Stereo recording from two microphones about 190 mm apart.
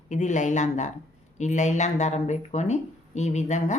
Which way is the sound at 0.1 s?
40° left (ahead or behind).